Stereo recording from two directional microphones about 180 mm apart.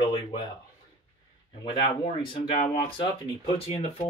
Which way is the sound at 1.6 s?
25° left (ahead or behind).